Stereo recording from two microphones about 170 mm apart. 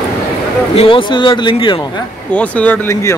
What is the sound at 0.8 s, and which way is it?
Speech, 30° left (ahead or behind).